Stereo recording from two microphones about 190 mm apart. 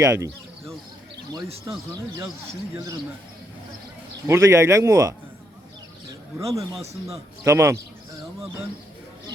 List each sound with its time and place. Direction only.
0.0 s a man's voice: 15° right (ahead or behind)
1.9 s a man's voice: 20° right (ahead or behind)
4.3 s a man's voice: 15° right (ahead or behind)
6.1 s bird: 15° right (ahead or behind)
7.4 s a man's voice: 15° right (ahead or behind)